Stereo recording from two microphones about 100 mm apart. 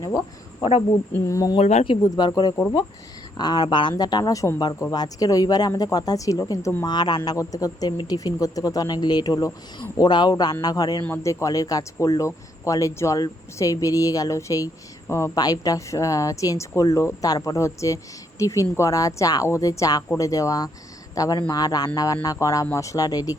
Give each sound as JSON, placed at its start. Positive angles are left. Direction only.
{"t": 0.0, "sound": "speech", "side_deg": 35}
{"t": 1.3, "sound": "speech", "side_deg": 35}
{"t": 1.5, "sound": "speech", "side_deg": 80}
{"t": 2.0, "sound": "speech", "side_deg": 45}
{"t": 6.8, "sound": "speech", "side_deg": 45}
{"t": 7.3, "sound": "speech", "side_deg": 35}